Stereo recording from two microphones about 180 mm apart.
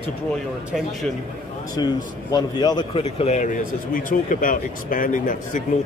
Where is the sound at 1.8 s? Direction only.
20° left (ahead or behind).